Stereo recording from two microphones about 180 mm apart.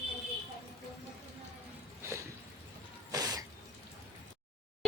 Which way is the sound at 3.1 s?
20° right (ahead or behind).